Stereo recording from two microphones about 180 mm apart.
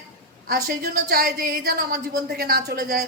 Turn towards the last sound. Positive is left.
turn(degrees=-55)  # may be behind; listen again after turning